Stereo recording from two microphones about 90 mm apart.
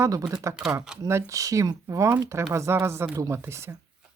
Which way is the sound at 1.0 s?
35° right (ahead or behind).